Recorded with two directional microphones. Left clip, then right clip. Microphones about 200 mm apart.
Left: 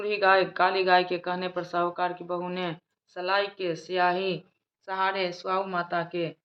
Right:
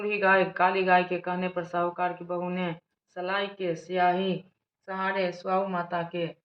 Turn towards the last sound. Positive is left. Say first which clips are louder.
# left 1 dB
turn(degrees=40)  # may be behind; listen again after turning